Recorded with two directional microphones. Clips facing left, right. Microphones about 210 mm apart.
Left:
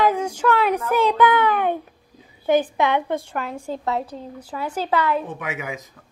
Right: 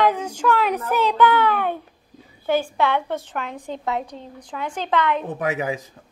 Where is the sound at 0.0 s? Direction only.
10° left (ahead or behind).